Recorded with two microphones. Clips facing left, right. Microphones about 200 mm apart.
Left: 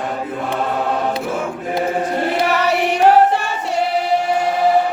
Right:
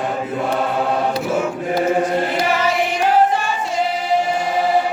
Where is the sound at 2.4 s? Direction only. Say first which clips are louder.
Left 2 dB; 65° left (ahead or behind).